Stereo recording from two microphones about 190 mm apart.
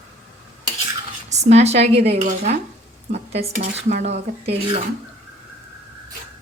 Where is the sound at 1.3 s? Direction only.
35° right (ahead or behind).